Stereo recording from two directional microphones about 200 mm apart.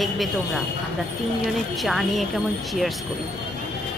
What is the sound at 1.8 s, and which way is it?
Speech, centre (ahead or behind).